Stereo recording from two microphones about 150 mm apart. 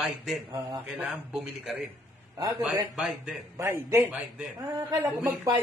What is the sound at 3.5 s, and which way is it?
A man's voice, 15° right (ahead or behind).